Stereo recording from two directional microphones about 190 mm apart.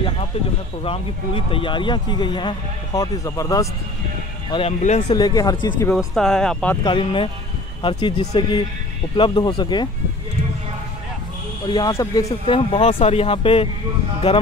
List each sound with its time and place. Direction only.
0.8 s speech: 30° left (ahead or behind)
4.5 s a man's voice: 30° left (ahead or behind)
5.1 s speech: 20° left (ahead or behind)
5.9 s speech: 5° left (ahead or behind)
6.8 s speech: 25° left (ahead or behind)
11.6 s speech: 20° left (ahead or behind)
12.3 s a man's voice: 30° left (ahead or behind)